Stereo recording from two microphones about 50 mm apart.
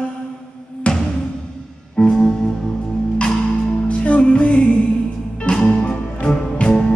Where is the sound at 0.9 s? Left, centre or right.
Left.